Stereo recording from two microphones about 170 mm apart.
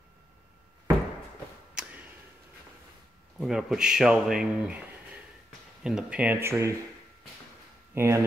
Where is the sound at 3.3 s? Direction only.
Centre (ahead or behind).